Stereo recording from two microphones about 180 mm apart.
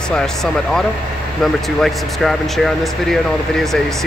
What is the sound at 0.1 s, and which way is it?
Speech, centre (ahead or behind).